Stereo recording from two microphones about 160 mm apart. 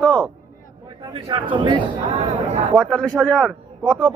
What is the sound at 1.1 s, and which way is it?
Speech, 35° right (ahead or behind).